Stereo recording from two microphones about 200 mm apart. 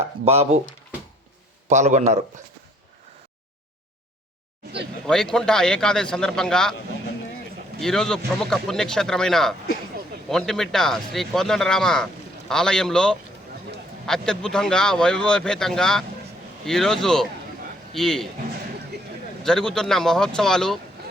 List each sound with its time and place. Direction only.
0.3 s a man's voice: 30° right (ahead or behind)
1.7 s a man's voice: 35° right (ahead or behind)
5.0 s speech: centre (ahead or behind)
7.8 s speech: centre (ahead or behind)
19.4 s speech: centre (ahead or behind)